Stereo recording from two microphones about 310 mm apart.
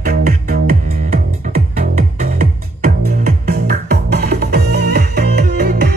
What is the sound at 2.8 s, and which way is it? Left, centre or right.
Music, right.